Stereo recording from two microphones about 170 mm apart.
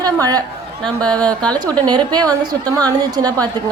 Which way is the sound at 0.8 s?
5° left (ahead or behind).